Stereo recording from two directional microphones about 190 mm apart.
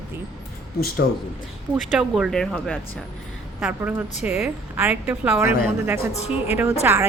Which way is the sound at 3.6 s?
10° right (ahead or behind).